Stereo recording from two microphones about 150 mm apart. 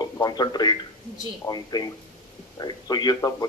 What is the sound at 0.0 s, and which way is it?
A man's voice, 25° left (ahead or behind).